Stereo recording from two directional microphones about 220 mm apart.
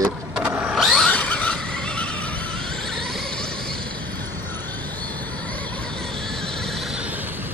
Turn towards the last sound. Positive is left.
turn(degrees=-10)  # may be behind; listen again after turning